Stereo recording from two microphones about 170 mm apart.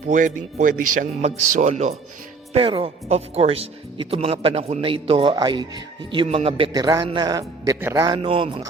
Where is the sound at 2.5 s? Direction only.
30° right (ahead or behind).